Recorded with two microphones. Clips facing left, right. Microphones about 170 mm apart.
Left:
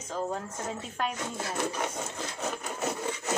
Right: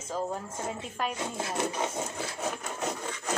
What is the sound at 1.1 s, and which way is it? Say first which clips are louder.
Speech: right 1 dB; 20° right (ahead or behind).